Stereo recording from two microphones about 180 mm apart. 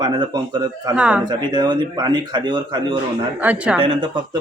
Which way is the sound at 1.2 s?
25° right (ahead or behind).